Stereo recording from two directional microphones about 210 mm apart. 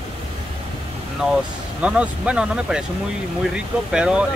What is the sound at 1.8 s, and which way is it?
Speech, 5° right (ahead or behind).